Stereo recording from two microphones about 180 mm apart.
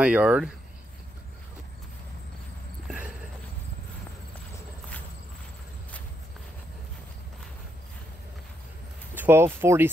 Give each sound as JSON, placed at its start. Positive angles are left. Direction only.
{"t": 0.0, "sound": "speech", "side_deg": -5}
{"t": 2.9, "sound": "horse", "side_deg": -5}
{"t": 9.1, "sound": "speech", "side_deg": -10}